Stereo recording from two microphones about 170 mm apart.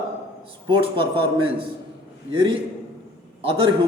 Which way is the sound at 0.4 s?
30° right (ahead or behind).